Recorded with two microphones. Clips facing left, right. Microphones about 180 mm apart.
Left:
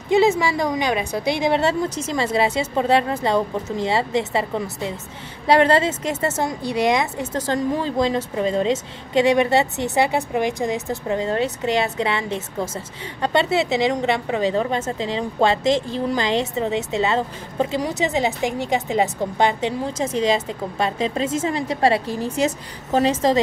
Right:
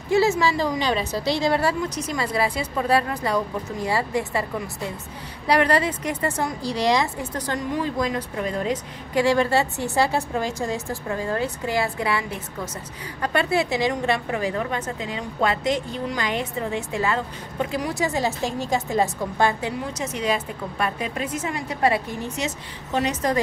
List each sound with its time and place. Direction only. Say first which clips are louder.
0.1 s a woman's voice: left 3 dB; 15° left (ahead or behind)